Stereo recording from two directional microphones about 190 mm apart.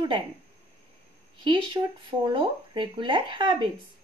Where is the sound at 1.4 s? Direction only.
25° right (ahead or behind).